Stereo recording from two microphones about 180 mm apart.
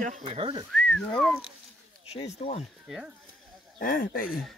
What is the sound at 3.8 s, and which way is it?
Speech, 50° left (ahead or behind).